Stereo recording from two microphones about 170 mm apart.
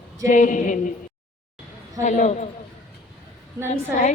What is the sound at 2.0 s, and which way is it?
Speech, 45° left (ahead or behind).